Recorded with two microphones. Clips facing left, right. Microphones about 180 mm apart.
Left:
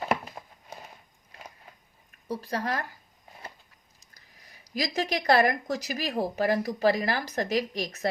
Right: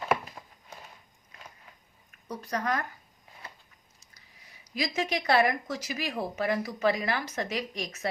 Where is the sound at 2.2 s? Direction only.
30° left (ahead or behind).